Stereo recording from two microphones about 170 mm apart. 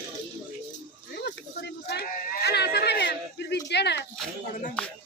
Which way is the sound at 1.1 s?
75° left (ahead or behind).